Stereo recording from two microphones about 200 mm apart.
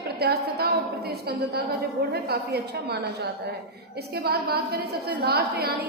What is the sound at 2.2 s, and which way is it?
A woman's voice, 55° right (ahead or behind).